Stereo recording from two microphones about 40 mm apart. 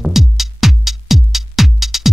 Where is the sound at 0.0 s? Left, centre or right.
Centre.